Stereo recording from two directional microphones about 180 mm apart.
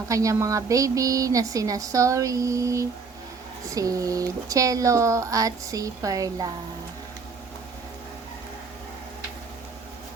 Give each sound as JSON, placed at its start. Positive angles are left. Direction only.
{"t": 0.1, "sound": "speech", "side_deg": -20}